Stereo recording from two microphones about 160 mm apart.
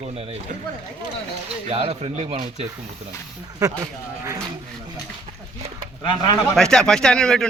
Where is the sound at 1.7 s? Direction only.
35° right (ahead or behind).